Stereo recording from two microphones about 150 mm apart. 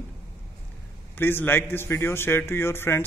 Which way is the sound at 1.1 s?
15° left (ahead or behind).